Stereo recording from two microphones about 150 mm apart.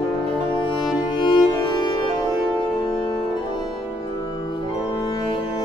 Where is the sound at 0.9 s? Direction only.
30° left (ahead or behind).